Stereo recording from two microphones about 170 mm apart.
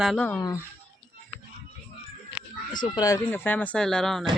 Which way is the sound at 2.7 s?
25° left (ahead or behind).